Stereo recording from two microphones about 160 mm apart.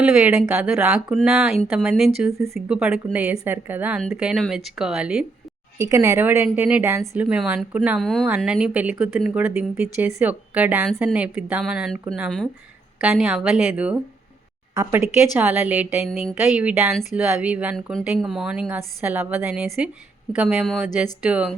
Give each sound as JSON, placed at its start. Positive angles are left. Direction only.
{"t": 0.0, "sound": "a woman's voice", "side_deg": -15}
{"t": 5.7, "sound": "a woman's voice", "side_deg": -20}
{"t": 13.0, "sound": "speech", "side_deg": -5}
{"t": 14.8, "sound": "a woman's voice", "side_deg": -20}